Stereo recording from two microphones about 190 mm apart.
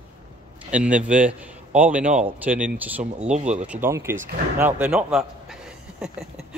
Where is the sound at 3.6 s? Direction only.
10° right (ahead or behind).